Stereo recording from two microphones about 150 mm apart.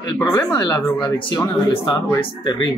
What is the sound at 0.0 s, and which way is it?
Speech, 25° left (ahead or behind).